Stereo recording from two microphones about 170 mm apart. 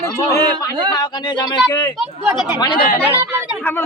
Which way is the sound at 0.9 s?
25° left (ahead or behind).